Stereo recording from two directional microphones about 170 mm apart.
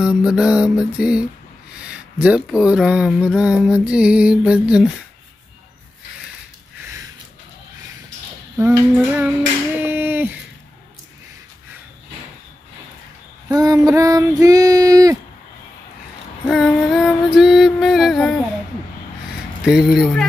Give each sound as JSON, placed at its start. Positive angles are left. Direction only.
{"t": 0.0, "sound": "speech", "side_deg": -5}
{"t": 8.5, "sound": "a sound", "side_deg": -15}
{"t": 13.5, "sound": "female singing", "side_deg": -20}
{"t": 16.4, "sound": "music", "side_deg": 0}
{"t": 19.6, "sound": "speech", "side_deg": -5}